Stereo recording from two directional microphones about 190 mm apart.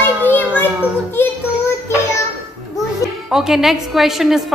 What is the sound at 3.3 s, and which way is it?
Mantra, centre (ahead or behind).